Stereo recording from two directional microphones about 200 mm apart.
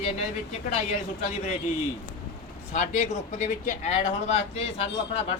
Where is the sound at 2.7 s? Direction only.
35° left (ahead or behind).